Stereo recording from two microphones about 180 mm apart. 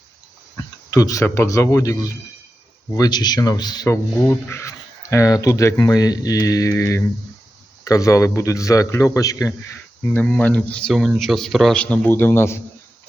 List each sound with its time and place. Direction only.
0.5 s a man's voice: 20° left (ahead or behind)